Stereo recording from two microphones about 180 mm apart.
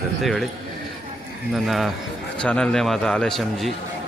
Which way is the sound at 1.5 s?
Centre (ahead or behind).